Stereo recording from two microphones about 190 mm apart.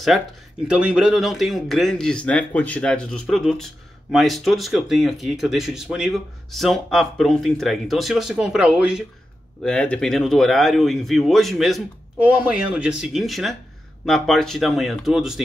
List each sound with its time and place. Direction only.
0.1 s a man's voice: centre (ahead or behind)